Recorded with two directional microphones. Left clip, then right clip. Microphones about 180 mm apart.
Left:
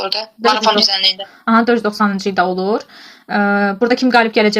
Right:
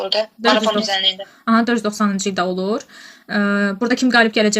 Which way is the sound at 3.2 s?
20° right (ahead or behind).